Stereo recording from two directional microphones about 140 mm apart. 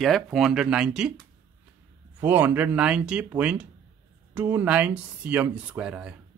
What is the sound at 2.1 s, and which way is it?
A man's voice, 15° right (ahead or behind).